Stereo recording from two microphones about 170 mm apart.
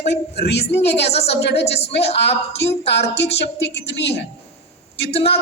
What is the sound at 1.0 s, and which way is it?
Speech, 35° left (ahead or behind).